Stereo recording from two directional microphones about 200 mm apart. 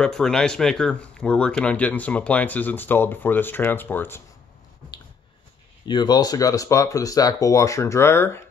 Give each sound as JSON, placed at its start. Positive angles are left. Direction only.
{"t": 0.0, "sound": "speech", "side_deg": 5}
{"t": 5.9, "sound": "speech", "side_deg": 20}